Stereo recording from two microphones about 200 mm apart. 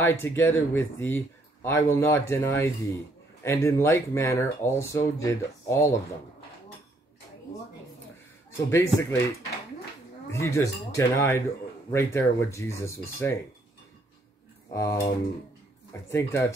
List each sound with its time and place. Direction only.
0.0 s speech: 10° left (ahead or behind)
8.5 s speech: 15° left (ahead or behind)
10.3 s speech: 15° left (ahead or behind)
14.7 s a sound: 15° left (ahead or behind)
16.1 s speech: 15° left (ahead or behind)